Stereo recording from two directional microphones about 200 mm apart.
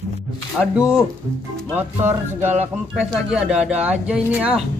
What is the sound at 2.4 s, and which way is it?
Speech, 10° right (ahead or behind).